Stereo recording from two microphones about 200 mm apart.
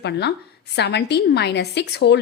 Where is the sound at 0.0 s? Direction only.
55° left (ahead or behind).